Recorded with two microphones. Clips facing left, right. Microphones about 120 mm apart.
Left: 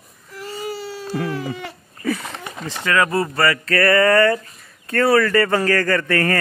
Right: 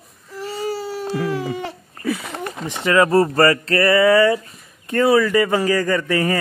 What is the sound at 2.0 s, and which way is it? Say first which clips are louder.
Speech: even; centre (ahead or behind).